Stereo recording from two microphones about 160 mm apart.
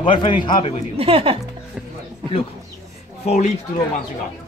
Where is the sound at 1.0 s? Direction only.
35° right (ahead or behind).